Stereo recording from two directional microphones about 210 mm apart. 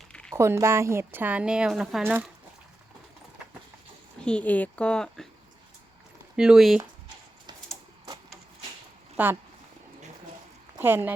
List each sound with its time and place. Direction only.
0.1 s a sound: 5° left (ahead or behind)
0.3 s a woman's voice: 15° right (ahead or behind)
4.2 s speech: 5° left (ahead or behind)
6.3 s speech: 5° right (ahead or behind)
9.1 s speech: 10° right (ahead or behind)
10.8 s speech: 10° right (ahead or behind)